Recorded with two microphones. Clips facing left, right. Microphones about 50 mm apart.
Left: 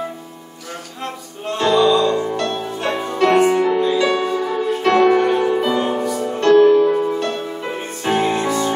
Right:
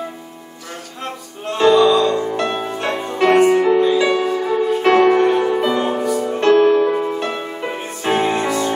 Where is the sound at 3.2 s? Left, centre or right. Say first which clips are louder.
Right 2 dB; centre.